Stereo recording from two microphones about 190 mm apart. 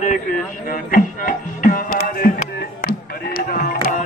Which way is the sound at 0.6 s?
45° left (ahead or behind).